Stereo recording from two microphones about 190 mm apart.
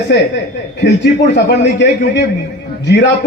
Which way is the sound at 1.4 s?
60° left (ahead or behind).